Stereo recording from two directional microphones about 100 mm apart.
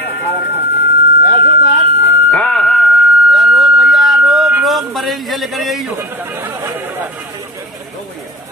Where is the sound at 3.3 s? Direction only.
Centre (ahead or behind).